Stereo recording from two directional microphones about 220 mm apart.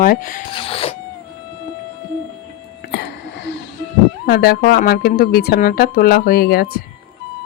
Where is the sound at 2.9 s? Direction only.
55° left (ahead or behind).